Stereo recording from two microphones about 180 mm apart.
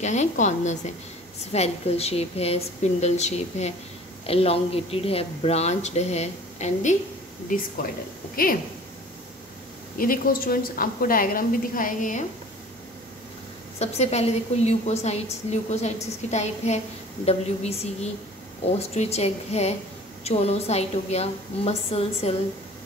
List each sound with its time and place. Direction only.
0.0 s a woman's voice: 40° left (ahead or behind)
9.9 s a woman's voice: 50° left (ahead or behind)
13.7 s speech: 35° left (ahead or behind)